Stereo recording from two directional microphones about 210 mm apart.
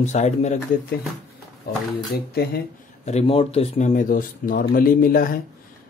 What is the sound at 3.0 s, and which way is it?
Speech, 30° left (ahead or behind).